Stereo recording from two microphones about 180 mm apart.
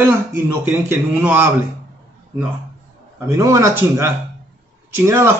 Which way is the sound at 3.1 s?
15° right (ahead or behind).